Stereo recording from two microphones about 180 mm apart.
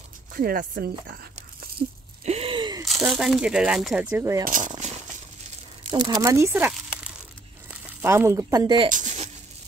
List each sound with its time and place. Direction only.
0.3 s speech: 55° right (ahead or behind)
2.2 s gasp: 35° right (ahead or behind)
2.8 s speech: centre (ahead or behind); by 4.5 s 15° right (ahead or behind)
4.5 s a sound: 45° right (ahead or behind)
5.9 s speech: 25° right (ahead or behind)
8.9 s a sound: 40° right (ahead or behind)